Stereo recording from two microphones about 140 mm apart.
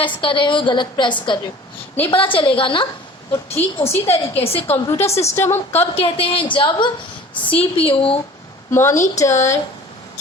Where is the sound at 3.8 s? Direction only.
20° left (ahead or behind).